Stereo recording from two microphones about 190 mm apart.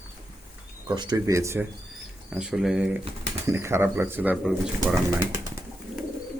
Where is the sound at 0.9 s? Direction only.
20° right (ahead or behind).